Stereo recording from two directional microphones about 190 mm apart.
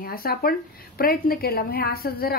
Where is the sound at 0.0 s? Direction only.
50° left (ahead or behind).